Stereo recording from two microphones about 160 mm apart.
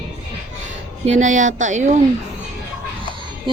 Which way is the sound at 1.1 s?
50° right (ahead or behind).